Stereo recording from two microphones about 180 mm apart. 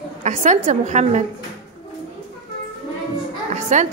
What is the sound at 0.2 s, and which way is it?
A woman's voice, 40° right (ahead or behind).